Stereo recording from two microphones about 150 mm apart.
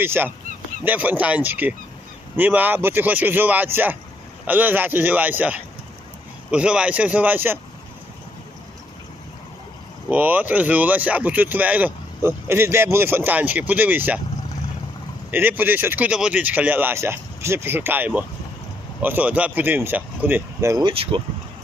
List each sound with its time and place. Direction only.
0.0 s speech: 15° right (ahead or behind)
10.1 s speech: 10° right (ahead or behind)
15.3 s speech: 15° right (ahead or behind)
20.8 s speech: 40° right (ahead or behind)